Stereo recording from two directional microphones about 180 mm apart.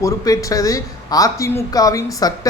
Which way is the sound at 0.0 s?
20° left (ahead or behind).